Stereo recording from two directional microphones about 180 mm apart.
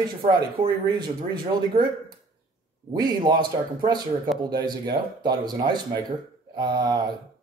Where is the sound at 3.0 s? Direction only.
25° right (ahead or behind).